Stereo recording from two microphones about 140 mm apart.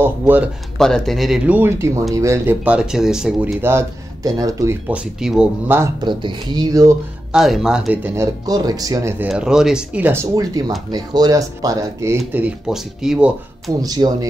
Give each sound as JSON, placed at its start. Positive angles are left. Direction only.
{"t": 0.0, "sound": "speech", "side_deg": -10}
{"t": 0.7, "sound": "speech", "side_deg": 5}
{"t": 2.6, "sound": "speech", "side_deg": -5}
{"t": 3.6, "sound": "speech", "side_deg": -20}
{"t": 4.8, "sound": "speech", "side_deg": -5}
{"t": 5.9, "sound": "speech", "side_deg": -35}
{"t": 7.3, "sound": "speech", "side_deg": -5}
{"t": 8.5, "sound": "speech", "side_deg": -25}
{"t": 9.3, "sound": "speech", "side_deg": -5}
{"t": 10.3, "sound": "speech", "side_deg": -25}
{"t": 12.3, "sound": "speech", "side_deg": -10}
{"t": 13.7, "sound": "speech", "side_deg": -25}